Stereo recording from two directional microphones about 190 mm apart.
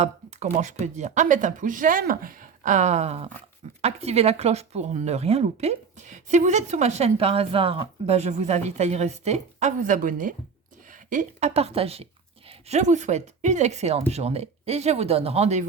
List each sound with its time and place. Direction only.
0.0 s speech: 40° right (ahead or behind)